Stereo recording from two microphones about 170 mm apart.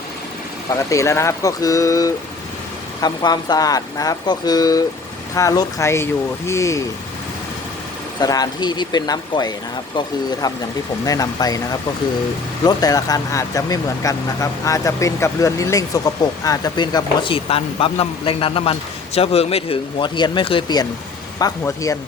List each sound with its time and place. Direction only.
0.7 s speech: 20° left (ahead or behind)
8.2 s speech: 25° left (ahead or behind)